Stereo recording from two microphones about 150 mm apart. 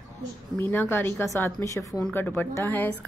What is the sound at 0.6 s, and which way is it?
Speech, 15° left (ahead or behind).